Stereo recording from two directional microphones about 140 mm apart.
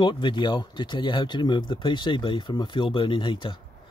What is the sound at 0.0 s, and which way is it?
Speech, 35° left (ahead or behind).